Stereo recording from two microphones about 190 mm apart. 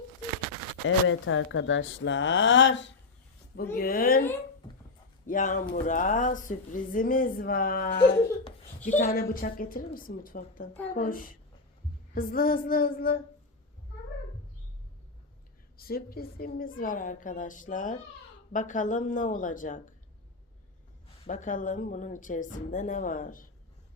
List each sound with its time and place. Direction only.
0.9 s speech: 90° left; by 2.9 s 75° left (ahead or behind)
3.5 s speech: 55° left (ahead or behind)
15.8 s speech: 55° left (ahead or behind)
21.2 s speech: 40° left (ahead or behind)